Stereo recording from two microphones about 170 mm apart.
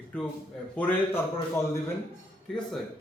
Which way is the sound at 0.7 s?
10° left (ahead or behind).